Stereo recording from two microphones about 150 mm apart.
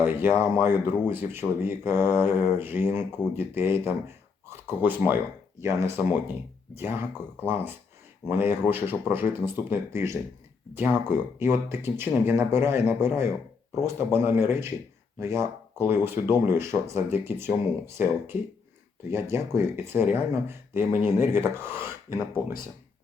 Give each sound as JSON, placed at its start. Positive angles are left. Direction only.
{"t": 0.0, "sound": "speech", "side_deg": -15}
{"t": 11.3, "sound": "speech", "side_deg": -15}